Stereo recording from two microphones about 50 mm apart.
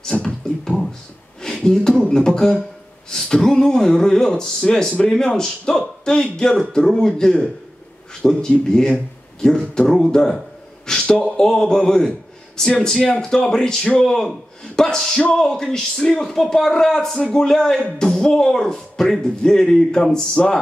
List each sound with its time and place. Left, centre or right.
0.0 s music: centre
1.4 s a man's voice: centre
11.3 s a man's voice: centre